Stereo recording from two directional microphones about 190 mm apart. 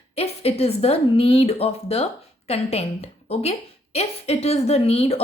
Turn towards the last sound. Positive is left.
turn(degrees=30)  # may be behind; listen again after turning